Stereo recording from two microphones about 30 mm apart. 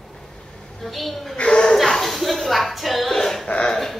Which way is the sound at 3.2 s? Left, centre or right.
Centre.